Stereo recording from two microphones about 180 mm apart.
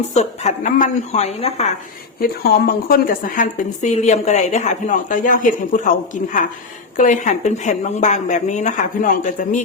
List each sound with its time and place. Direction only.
0.1 s speech: 40° left (ahead or behind)
2.2 s a woman's voice: 55° left (ahead or behind)
6.9 s a woman's voice: 45° left (ahead or behind)